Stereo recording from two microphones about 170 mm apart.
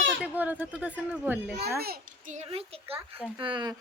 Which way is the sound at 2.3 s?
35° right (ahead or behind).